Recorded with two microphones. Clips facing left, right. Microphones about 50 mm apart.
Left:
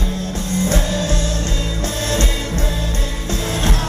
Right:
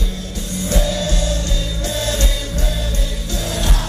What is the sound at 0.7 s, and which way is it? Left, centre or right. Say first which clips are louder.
Music: right 4 dB; left.